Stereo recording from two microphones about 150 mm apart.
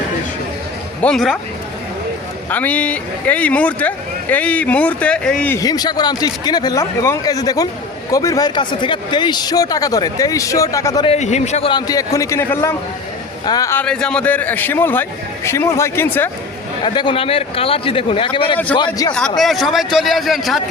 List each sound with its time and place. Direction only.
1.0 s a man's voice: centre (ahead or behind)
2.5 s speech: 10° left (ahead or behind)
5.5 s speech: 25° left (ahead or behind)
11.0 s a man's voice: 45° left (ahead or behind)
11.7 s speech: 25° left (ahead or behind)
13.8 s speech: 5° left (ahead or behind)
16.8 s a man's voice: 30° left (ahead or behind)
19.4 s a man's voice: centre (ahead or behind)